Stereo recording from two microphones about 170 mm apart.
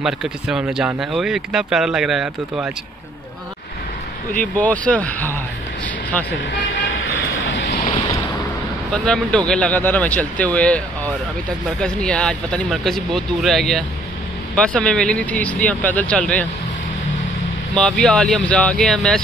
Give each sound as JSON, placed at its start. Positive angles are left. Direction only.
{"t": 0.0, "sound": "speech", "side_deg": -5}
{"t": 4.3, "sound": "speech", "side_deg": 10}
{"t": 7.4, "sound": "vehicle", "side_deg": 90}
{"t": 8.9, "sound": "speech", "side_deg": 5}
{"t": 11.8, "sound": "speech", "side_deg": 5}
{"t": 17.7, "sound": "speech", "side_deg": 5}